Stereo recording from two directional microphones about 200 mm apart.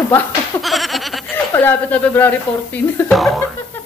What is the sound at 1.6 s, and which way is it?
Speech, 10° left (ahead or behind).